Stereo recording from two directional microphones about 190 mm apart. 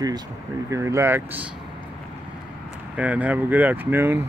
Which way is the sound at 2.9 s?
10° right (ahead or behind).